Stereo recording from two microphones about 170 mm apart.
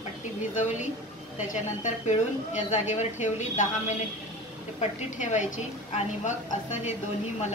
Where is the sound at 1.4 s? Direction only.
45° left (ahead or behind).